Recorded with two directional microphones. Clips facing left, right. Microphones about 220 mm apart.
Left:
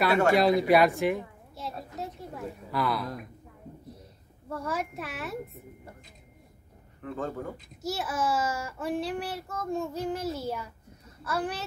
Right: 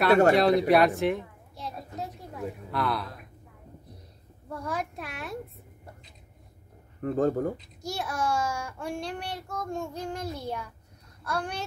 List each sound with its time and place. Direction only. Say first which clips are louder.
0.3 s a woman's voice: right 1 dB; centre (ahead or behind)
4.5 s a child's voice: left 1 dB; centre (ahead or behind)
7.0 s speech: right 9 dB; 40° right (ahead or behind)
7.8 s a child's voice: left 1 dB; 5° left (ahead or behind)